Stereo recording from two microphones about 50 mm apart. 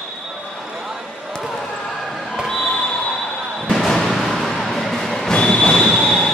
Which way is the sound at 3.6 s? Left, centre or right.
Centre.